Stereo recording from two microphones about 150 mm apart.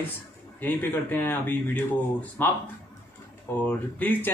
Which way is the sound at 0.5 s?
10° left (ahead or behind).